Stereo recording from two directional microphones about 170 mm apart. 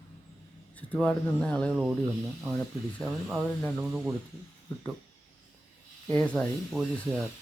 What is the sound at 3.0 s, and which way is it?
Speech, centre (ahead or behind).